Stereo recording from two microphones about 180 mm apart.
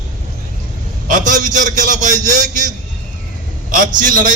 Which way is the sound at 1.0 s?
45° right (ahead or behind).